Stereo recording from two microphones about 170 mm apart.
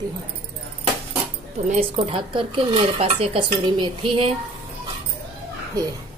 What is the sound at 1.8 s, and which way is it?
Speech, 35° right (ahead or behind).